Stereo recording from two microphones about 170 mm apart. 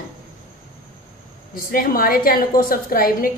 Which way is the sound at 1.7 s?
60° left (ahead or behind).